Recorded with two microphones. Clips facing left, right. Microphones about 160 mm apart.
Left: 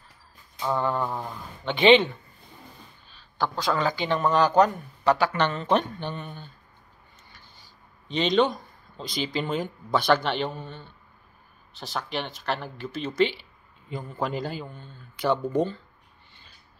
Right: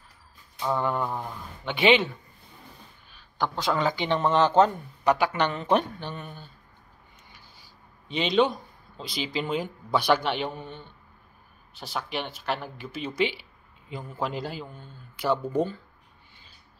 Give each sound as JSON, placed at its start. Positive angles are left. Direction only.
{"t": 0.7, "sound": "speech", "side_deg": -10}
{"t": 3.1, "sound": "speech", "side_deg": -20}